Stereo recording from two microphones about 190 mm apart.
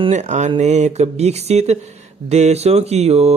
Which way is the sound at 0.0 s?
35° right (ahead or behind).